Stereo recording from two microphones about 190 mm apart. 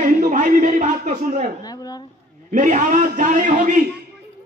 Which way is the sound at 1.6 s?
20° left (ahead or behind).